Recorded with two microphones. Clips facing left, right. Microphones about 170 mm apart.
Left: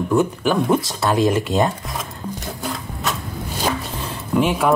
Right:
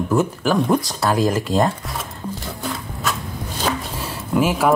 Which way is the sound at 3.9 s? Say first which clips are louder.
Even; 5° right (ahead or behind).